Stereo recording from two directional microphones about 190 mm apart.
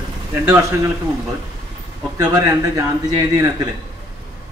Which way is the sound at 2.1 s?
20° right (ahead or behind).